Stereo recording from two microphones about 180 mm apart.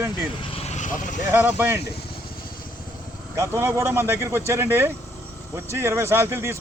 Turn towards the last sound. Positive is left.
turn(degrees=-15)  # may be behind; listen again after turning